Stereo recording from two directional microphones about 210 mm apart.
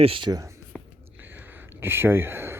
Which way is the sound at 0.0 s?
25° right (ahead or behind).